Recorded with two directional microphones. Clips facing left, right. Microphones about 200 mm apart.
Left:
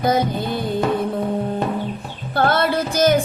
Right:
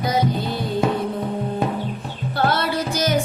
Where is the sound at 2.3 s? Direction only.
50° left (ahead or behind).